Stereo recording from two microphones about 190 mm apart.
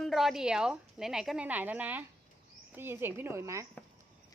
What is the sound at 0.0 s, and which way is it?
A woman's voice, centre (ahead or behind).